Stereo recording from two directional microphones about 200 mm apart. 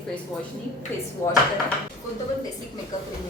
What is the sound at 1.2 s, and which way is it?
Speech, 15° left (ahead or behind).